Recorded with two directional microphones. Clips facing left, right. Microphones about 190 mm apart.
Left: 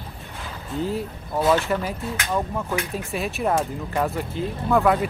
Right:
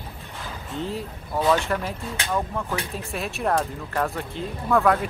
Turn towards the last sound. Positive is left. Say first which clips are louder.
# left 1 dB
turn(degrees=0)  # may be behind; listen again after turning